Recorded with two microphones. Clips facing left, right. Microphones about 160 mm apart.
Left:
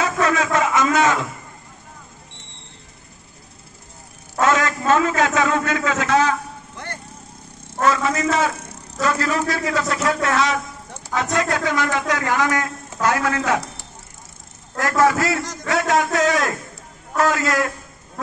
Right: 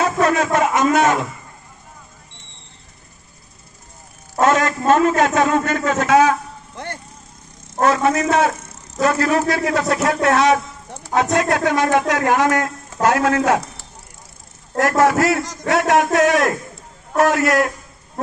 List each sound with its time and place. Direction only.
0.0 s a sound: 45° right (ahead or behind)
4.4 s a man's voice: 45° right (ahead or behind)
7.8 s a man's voice: 50° right (ahead or behind)
8.5 s a man's voice: 45° right (ahead or behind)
14.8 s a man's voice: 65° right (ahead or behind)